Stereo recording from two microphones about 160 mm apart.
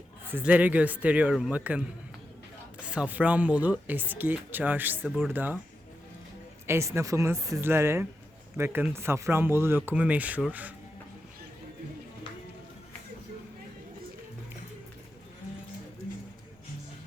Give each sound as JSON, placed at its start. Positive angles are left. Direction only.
{"t": 0.3, "sound": "speech", "side_deg": -10}
{"t": 2.8, "sound": "speech", "side_deg": -5}
{"t": 6.7, "sound": "speech", "side_deg": -15}